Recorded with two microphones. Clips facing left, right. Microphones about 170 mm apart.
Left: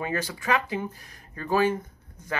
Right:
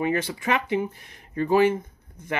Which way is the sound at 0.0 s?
20° right (ahead or behind).